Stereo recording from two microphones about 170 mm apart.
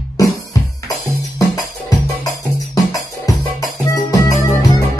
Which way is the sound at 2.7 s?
20° left (ahead or behind).